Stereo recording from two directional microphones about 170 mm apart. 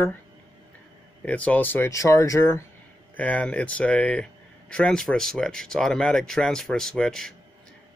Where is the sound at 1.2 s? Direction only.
10° left (ahead or behind).